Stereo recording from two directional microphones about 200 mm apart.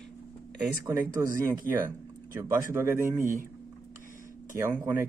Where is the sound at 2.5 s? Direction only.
15° right (ahead or behind).